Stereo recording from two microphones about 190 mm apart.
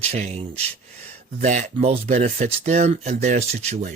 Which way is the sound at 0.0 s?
35° right (ahead or behind).